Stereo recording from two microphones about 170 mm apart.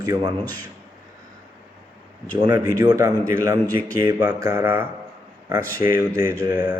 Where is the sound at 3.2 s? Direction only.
55° left (ahead or behind).